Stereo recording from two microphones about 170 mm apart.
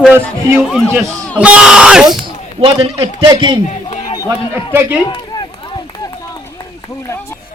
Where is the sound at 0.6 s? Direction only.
Centre (ahead or behind).